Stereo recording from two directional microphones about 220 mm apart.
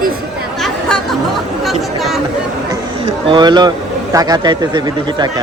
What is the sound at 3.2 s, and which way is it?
Speech, 20° right (ahead or behind).